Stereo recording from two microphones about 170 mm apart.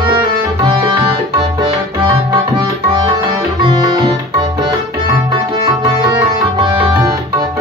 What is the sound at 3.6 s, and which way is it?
Music, 25° right (ahead or behind).